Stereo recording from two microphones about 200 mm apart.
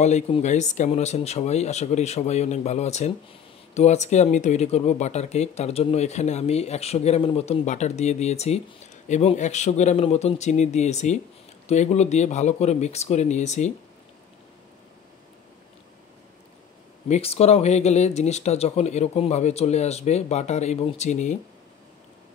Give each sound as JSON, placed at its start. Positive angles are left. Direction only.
{"t": 0.0, "sound": "speech", "side_deg": 35}
{"t": 17.1, "sound": "speech", "side_deg": 30}